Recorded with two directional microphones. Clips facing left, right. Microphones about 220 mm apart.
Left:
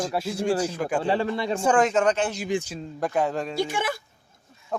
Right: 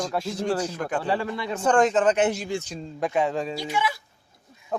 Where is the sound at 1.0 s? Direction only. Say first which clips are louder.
Left 3 dB; 25° left (ahead or behind).